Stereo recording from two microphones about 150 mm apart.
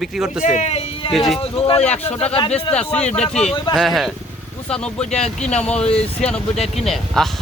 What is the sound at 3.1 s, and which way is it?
Speech, 45° left (ahead or behind).